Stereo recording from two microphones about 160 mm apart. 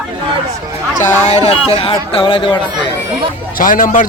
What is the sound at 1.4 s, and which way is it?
Speech, 35° left (ahead or behind).